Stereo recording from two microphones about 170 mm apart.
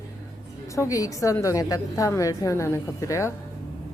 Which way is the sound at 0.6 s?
20° left (ahead or behind).